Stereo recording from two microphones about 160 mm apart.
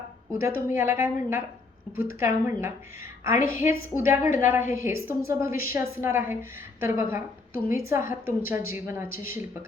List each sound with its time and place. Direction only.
0.3 s a woman's voice: 15° right (ahead or behind)